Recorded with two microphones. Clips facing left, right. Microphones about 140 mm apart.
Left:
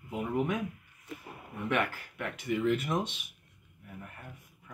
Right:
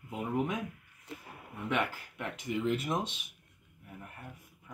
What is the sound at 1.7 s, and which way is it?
Speech, 25° right (ahead or behind).